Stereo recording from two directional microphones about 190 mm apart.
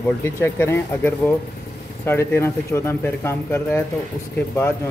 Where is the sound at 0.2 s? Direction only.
10° left (ahead or behind).